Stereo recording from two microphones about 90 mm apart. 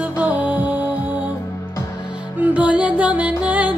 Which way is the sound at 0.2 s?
15° right (ahead or behind).